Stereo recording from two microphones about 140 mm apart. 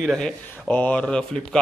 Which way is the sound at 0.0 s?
5° left (ahead or behind).